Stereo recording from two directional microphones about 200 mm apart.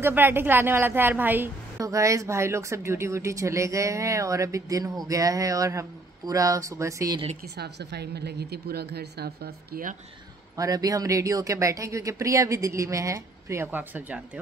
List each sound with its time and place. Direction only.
0.0 s a woman's voice: 10° right (ahead or behind)
7.5 s a woman's voice: 55° right (ahead or behind)
10.5 s a woman's voice: 15° right (ahead or behind)